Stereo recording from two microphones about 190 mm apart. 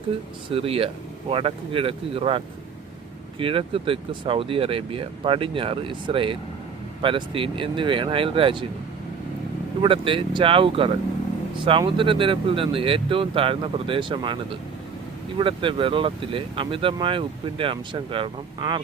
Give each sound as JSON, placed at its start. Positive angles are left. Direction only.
{"t": 0.5, "sound": "speech", "side_deg": -30}
{"t": 9.8, "sound": "speech", "side_deg": -25}